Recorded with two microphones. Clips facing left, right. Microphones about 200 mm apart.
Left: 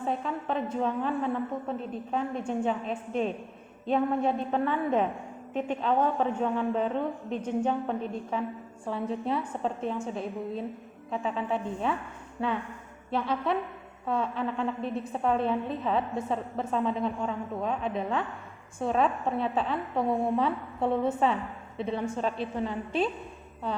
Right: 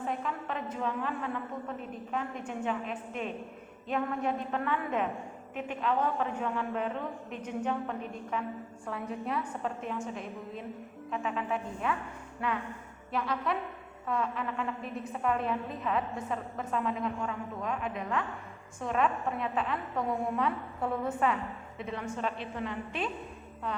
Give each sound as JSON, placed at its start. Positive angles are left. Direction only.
{"t": 0.1, "sound": "a woman's voice", "side_deg": 30}
{"t": 2.5, "sound": "a woman's voice", "side_deg": 30}